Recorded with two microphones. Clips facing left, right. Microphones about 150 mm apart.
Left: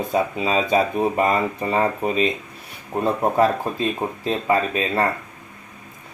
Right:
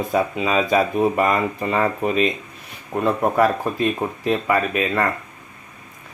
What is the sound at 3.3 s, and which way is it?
Speech, 25° left (ahead or behind).